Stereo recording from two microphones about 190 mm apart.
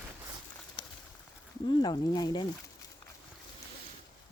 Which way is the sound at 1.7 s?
20° left (ahead or behind).